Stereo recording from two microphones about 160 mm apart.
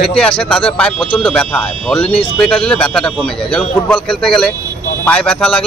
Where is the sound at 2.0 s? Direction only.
35° left (ahead or behind).